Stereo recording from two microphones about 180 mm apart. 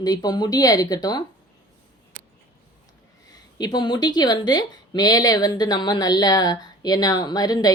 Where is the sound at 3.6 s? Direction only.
25° left (ahead or behind).